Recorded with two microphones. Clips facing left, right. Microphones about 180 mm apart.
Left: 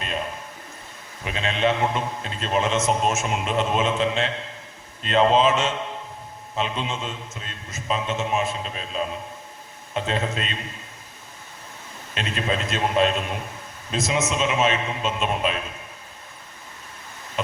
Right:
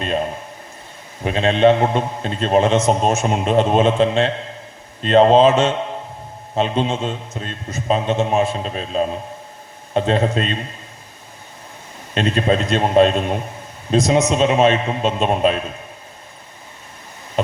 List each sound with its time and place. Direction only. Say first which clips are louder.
0.0 s a sound: right 8 dB; 35° right (ahead or behind)
1.2 s a man's voice: right 9 dB; 40° right (ahead or behind)
12.1 s a man's voice: right 9 dB; 40° right (ahead or behind)